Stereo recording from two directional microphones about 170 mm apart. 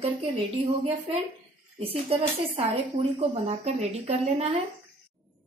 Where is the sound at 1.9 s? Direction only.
35° right (ahead or behind).